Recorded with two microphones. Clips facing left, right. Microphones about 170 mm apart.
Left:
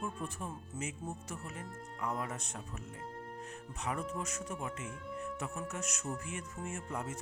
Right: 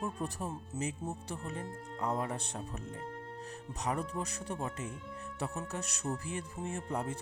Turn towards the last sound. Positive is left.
turn(degrees=-35)  # may be behind; listen again after turning